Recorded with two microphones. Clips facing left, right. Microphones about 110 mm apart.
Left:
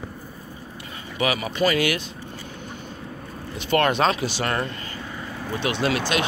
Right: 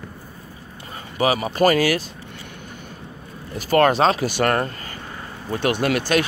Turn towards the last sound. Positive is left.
turn(degrees=-50)  # may be behind; listen again after turning